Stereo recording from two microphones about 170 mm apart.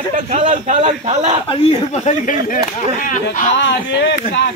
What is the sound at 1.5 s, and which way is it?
Speech, 40° left (ahead or behind).